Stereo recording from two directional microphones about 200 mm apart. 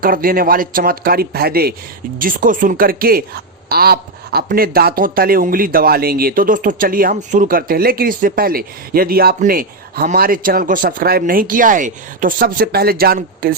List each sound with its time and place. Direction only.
0.0 s a woman's voice: 45° right (ahead or behind)